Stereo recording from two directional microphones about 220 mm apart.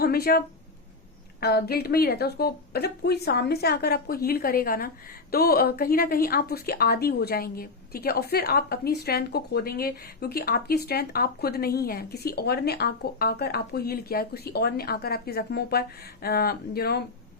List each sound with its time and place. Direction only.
0.0 s speech: 45° left (ahead or behind)